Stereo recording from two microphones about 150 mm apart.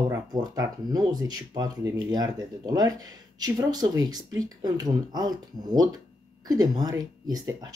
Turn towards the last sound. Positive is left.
turn(degrees=-25)  # may be behind; listen again after turning